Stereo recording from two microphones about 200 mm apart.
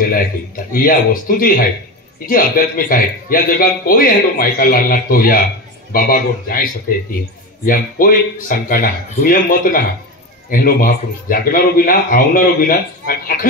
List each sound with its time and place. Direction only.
0.7 s speech: 45° left (ahead or behind)